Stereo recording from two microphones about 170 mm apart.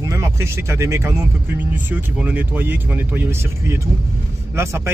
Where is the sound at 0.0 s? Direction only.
15° right (ahead or behind).